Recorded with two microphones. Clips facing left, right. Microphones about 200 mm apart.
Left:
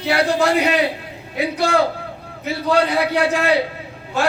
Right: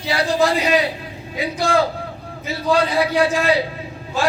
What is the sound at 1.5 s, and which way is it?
Speech, 65° left (ahead or behind).